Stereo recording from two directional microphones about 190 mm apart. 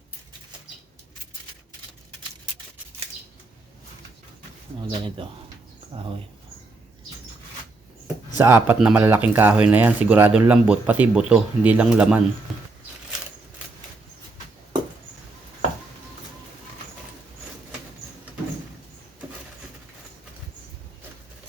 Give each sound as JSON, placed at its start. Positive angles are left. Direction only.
{"t": 4.8, "sound": "speech", "side_deg": -25}
{"t": 8.4, "sound": "speech", "side_deg": -10}
{"t": 12.5, "sound": "patter", "side_deg": 0}